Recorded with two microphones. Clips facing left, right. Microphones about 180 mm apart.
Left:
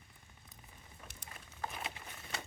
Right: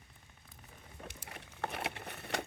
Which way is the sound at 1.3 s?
70° right (ahead or behind).